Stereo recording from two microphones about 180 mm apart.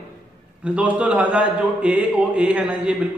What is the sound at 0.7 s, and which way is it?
A man's voice, 5° right (ahead or behind).